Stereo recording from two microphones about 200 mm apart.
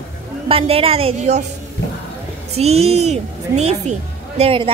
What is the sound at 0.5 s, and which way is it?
Speech, 30° right (ahead or behind).